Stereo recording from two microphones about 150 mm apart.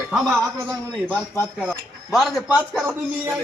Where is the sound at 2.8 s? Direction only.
15° right (ahead or behind).